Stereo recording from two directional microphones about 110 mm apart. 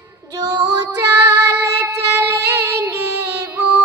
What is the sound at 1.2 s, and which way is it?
Child singing, 30° right (ahead or behind).